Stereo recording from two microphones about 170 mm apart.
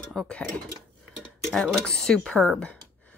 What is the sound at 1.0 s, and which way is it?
Dishes, centre (ahead or behind).